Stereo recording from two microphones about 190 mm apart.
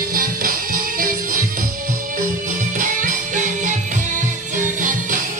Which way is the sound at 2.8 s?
45° right (ahead or behind).